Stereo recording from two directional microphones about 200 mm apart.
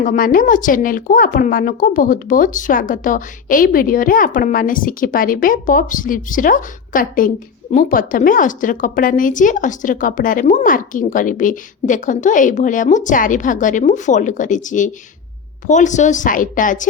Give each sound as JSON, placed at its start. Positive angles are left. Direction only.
{"t": 0.0, "sound": "a woman's voice", "side_deg": 45}